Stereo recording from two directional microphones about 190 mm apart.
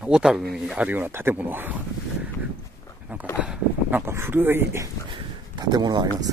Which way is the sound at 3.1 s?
10° right (ahead or behind).